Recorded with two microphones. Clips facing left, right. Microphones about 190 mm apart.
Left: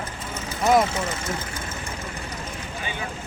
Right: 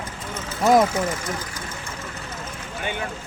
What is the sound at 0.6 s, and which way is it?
Speech, 40° right (ahead or behind).